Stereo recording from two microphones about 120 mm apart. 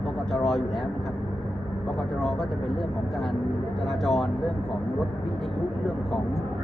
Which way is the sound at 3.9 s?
Centre (ahead or behind).